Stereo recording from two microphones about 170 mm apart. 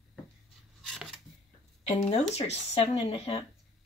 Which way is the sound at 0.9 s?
Centre (ahead or behind).